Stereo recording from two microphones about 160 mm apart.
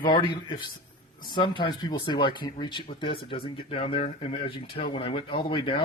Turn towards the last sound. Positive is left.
turn(degrees=35)  # may be behind; listen again after turning